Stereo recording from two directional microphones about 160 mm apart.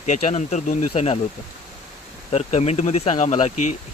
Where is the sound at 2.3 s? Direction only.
40° left (ahead or behind).